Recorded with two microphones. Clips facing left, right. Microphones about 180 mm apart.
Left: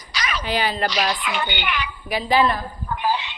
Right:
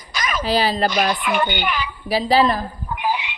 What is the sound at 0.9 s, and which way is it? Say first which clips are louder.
A woman's voice: right 4 dB; 50° right (ahead or behind).